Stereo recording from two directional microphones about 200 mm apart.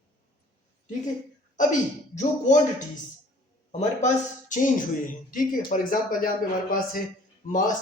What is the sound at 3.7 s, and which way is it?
Speech, 35° left (ahead or behind).